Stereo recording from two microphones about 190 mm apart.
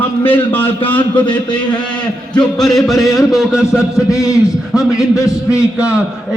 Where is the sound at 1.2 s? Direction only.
25° left (ahead or behind).